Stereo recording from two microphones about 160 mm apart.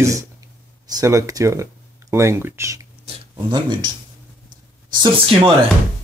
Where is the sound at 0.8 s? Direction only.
20° right (ahead or behind).